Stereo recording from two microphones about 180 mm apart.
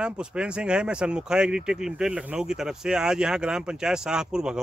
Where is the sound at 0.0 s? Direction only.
5° right (ahead or behind).